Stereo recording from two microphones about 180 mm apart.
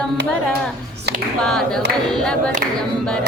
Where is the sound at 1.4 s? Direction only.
Centre (ahead or behind).